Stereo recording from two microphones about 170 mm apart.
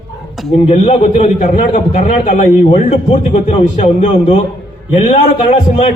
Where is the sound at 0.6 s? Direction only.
35° left (ahead or behind).